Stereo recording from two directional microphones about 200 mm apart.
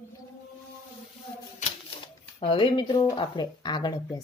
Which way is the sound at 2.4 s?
25° left (ahead or behind).